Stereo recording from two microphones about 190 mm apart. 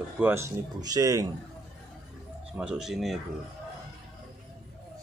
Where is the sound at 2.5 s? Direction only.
5° right (ahead or behind).